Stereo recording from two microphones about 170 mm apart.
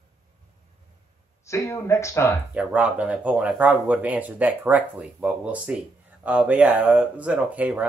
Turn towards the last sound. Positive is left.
turn(degrees=-10)  # may be behind; listen again after turning